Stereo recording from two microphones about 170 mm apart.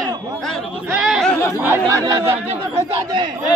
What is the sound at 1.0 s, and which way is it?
Speech, centre (ahead or behind).